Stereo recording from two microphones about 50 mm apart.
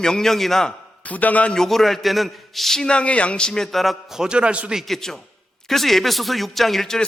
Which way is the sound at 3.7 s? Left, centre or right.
Centre.